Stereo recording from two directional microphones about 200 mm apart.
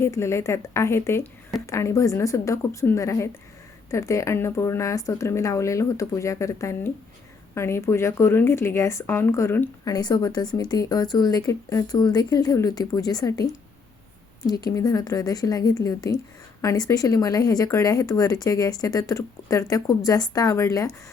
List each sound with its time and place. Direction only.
0.0 s a woman's voice: 15° left (ahead or behind)
14.4 s a woman's voice: 20° left (ahead or behind)